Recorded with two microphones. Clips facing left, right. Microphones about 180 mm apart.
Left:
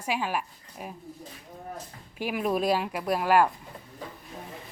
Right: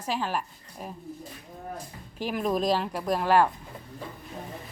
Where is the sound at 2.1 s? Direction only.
10° left (ahead or behind).